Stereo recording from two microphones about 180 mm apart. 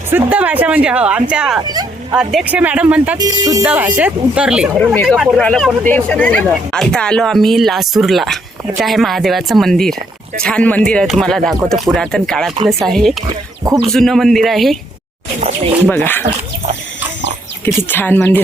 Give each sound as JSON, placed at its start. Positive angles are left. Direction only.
{"t": 0.1, "sound": "speech", "side_deg": -10}
{"t": 1.6, "sound": "speech", "side_deg": -20}
{"t": 2.1, "sound": "speech", "side_deg": -5}
{"t": 3.2, "sound": "speech", "side_deg": -20}
{"t": 3.6, "sound": "speech", "side_deg": -10}
{"t": 15.4, "sound": "speech", "side_deg": -40}
{"t": 15.9, "sound": "speech", "side_deg": 10}
{"t": 17.8, "sound": "speech", "side_deg": 10}